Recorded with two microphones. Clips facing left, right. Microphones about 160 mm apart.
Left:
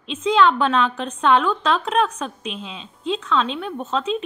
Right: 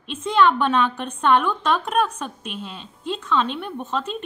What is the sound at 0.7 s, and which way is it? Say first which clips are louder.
A woman's voice: left 1 dB; 5° right (ahead or behind).